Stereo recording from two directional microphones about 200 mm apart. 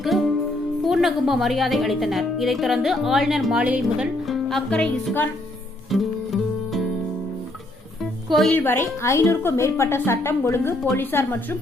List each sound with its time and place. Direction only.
0.0 s music: centre (ahead or behind)
0.9 s a woman's voice: centre (ahead or behind)
5.9 s music: centre (ahead or behind)
8.3 s a woman's voice: 5° left (ahead or behind)